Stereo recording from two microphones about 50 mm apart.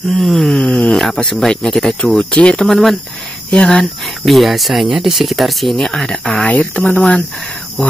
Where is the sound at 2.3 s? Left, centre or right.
Left.